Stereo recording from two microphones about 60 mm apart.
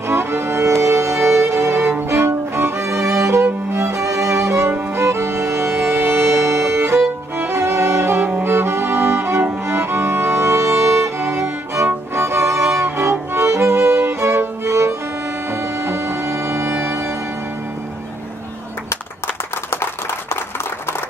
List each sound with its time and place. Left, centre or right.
0.1 s music: right
8.2 s music: right
12.8 s music: right
18.9 s a sound: left